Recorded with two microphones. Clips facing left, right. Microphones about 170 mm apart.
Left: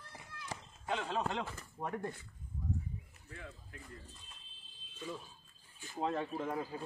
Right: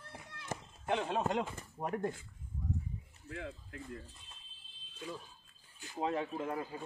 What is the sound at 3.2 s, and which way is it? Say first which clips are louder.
Speech: right 11 dB; 85° right.